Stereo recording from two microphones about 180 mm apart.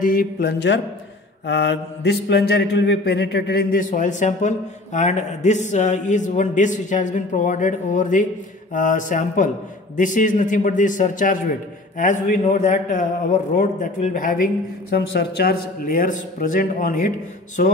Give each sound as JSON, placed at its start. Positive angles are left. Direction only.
{"t": 0.0, "sound": "mantra", "side_deg": 55}